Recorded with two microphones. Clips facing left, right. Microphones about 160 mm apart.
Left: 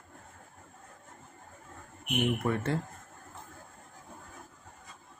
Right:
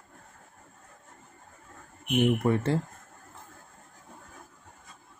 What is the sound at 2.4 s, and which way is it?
Speech, 30° right (ahead or behind).